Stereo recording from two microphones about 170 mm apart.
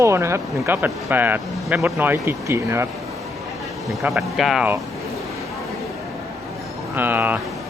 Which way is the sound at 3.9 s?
Centre (ahead or behind).